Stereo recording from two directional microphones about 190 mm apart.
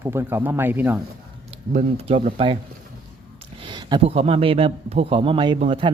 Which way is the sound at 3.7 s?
25° right (ahead or behind).